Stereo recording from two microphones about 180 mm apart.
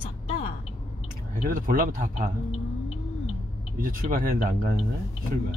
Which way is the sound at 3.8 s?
50° right (ahead or behind).